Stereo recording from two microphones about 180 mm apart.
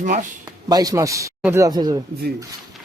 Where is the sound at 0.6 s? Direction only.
20° right (ahead or behind).